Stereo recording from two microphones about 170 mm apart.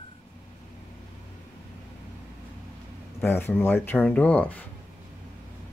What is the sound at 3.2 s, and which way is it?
Speech, 10° left (ahead or behind).